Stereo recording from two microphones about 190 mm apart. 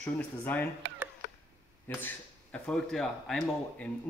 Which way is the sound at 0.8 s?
70° right (ahead or behind).